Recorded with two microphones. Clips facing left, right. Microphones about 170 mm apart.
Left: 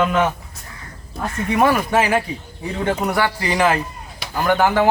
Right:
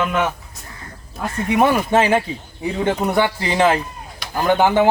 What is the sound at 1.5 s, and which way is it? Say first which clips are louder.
Speech: right 1 dB; 20° right (ahead or behind).